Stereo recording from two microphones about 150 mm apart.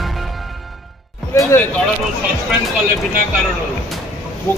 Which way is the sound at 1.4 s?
20° left (ahead or behind).